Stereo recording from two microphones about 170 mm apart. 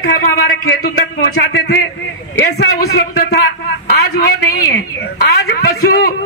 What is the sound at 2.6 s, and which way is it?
Speech, 85° left.